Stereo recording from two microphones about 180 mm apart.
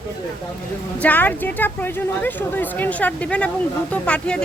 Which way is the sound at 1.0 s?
10° left (ahead or behind).